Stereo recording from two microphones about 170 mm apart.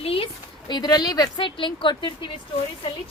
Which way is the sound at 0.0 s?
35° left (ahead or behind).